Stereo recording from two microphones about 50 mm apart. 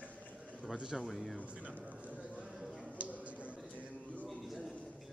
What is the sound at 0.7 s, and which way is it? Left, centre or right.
Speech, centre.